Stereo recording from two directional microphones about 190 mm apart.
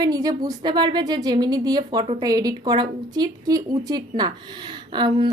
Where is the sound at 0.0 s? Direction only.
20° right (ahead or behind).